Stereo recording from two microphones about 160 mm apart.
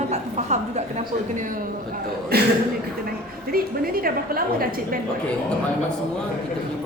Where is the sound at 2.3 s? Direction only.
80° right.